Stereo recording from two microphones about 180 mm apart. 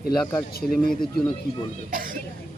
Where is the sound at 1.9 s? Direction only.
50° right (ahead or behind).